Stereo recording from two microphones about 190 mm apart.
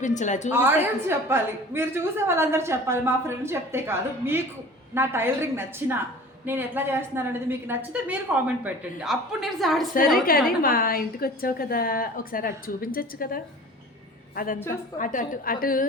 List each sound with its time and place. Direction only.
0.0 s a woman's voice: 40° left (ahead or behind)
0.5 s a woman's voice: 10° right (ahead or behind)
10.2 s a woman's voice: 50° left (ahead or behind)